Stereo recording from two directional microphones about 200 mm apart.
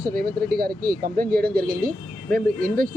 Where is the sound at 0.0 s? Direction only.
45° right (ahead or behind).